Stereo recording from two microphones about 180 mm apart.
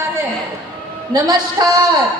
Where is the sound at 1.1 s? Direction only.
20° right (ahead or behind).